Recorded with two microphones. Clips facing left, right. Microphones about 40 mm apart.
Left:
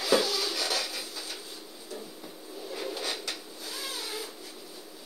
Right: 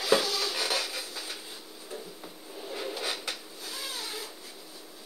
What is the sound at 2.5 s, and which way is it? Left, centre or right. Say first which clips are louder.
Printer: even; centre.